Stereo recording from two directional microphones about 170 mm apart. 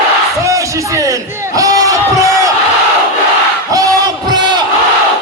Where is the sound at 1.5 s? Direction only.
20° right (ahead or behind).